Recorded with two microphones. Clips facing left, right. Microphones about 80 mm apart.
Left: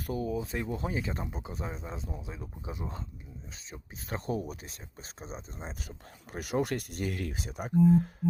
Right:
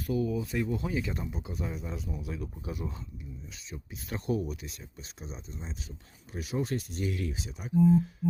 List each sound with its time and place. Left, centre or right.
0.1 s speech: left
3.7 s speech: left
6.3 s speech: left